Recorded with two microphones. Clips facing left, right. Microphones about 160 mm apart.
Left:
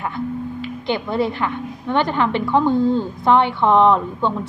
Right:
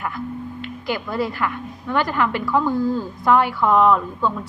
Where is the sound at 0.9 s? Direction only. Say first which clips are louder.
Left 3 dB; 25° left (ahead or behind).